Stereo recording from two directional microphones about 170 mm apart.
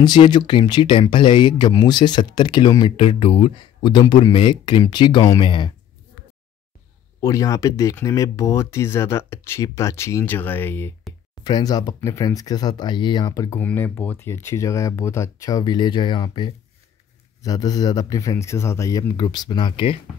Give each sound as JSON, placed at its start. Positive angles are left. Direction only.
{"t": 0.0, "sound": "speech", "side_deg": 25}
{"t": 7.2, "sound": "speech", "side_deg": 20}
{"t": 11.4, "sound": "speech", "side_deg": 25}
{"t": 13.6, "sound": "speech", "side_deg": 10}